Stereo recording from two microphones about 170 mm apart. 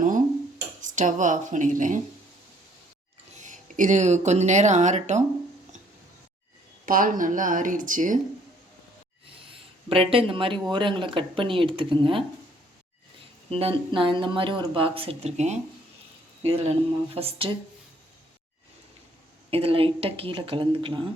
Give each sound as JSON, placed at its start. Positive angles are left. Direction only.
{"t": 0.8, "sound": "speech", "side_deg": -45}
{"t": 3.3, "sound": "speech", "side_deg": -50}
{"t": 6.8, "sound": "speech", "side_deg": -55}
{"t": 9.5, "sound": "speech", "side_deg": -35}
{"t": 13.5, "sound": "speech", "side_deg": -35}
{"t": 19.5, "sound": "speech", "side_deg": -35}